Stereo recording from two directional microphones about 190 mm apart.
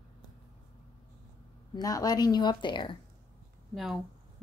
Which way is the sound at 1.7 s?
20° left (ahead or behind).